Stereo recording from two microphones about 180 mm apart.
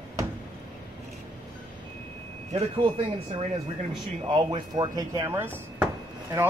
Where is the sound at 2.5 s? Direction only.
30° right (ahead or behind).